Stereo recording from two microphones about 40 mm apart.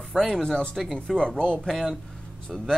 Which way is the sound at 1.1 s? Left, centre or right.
Left.